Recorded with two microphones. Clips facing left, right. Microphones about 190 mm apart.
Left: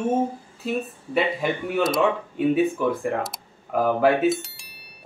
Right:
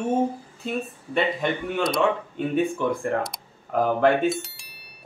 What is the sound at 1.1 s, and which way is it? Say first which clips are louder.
Speech: left 1 dB; 5° left (ahead or behind).